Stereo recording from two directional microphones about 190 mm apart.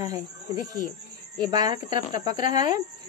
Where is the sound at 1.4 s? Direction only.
25° right (ahead or behind).